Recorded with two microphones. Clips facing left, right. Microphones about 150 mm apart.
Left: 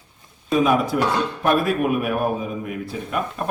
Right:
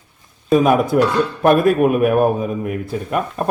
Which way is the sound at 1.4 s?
45° right (ahead or behind).